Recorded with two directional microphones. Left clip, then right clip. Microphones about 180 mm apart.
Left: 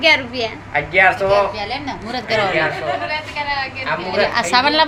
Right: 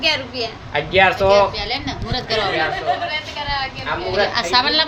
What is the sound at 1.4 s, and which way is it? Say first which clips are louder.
Speech: right 1 dB; 25° left (ahead or behind).